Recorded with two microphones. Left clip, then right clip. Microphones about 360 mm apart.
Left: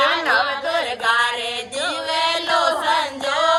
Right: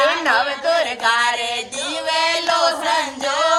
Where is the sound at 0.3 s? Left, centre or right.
Centre.